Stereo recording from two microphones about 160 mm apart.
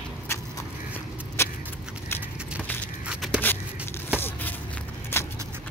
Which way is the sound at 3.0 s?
5° right (ahead or behind).